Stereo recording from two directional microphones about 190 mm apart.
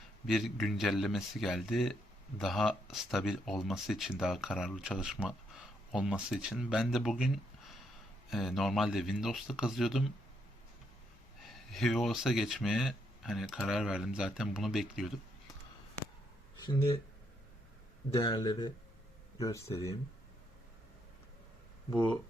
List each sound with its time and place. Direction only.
0.3 s speech: centre (ahead or behind)
8.3 s speech: centre (ahead or behind)
11.4 s speech: centre (ahead or behind)
16.6 s speech: 25° left (ahead or behind)
18.1 s speech: 20° left (ahead or behind)